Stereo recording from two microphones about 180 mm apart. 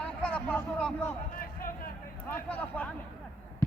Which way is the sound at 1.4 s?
55° left (ahead or behind).